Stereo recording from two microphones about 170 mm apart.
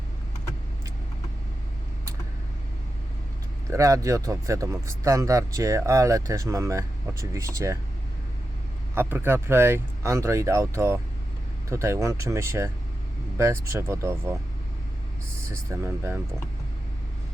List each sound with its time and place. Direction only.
3.7 s speech: 20° right (ahead or behind)
9.0 s speech: 15° right (ahead or behind)
15.4 s speech: 15° right (ahead or behind)